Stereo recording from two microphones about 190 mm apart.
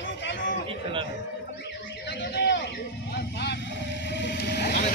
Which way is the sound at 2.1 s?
60° left (ahead or behind).